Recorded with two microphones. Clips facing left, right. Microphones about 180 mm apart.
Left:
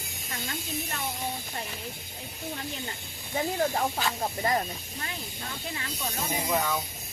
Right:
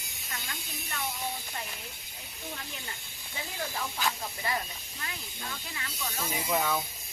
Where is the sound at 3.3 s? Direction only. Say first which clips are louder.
Left 10 dB; 50° left (ahead or behind).